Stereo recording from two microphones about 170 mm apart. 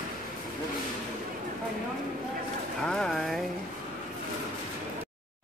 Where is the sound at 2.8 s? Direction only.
5° left (ahead or behind).